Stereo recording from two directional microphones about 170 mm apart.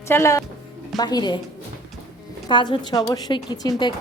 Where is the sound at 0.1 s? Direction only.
15° left (ahead or behind).